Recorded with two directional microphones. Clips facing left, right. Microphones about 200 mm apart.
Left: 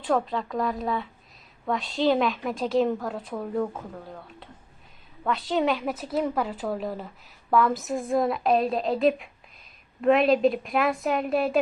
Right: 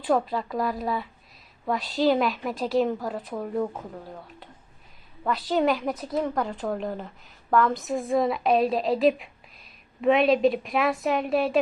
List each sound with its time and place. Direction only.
0.0 s a woman's voice: 5° right (ahead or behind)